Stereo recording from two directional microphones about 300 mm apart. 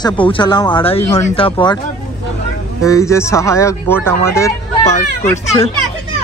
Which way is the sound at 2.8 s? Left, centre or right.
Centre.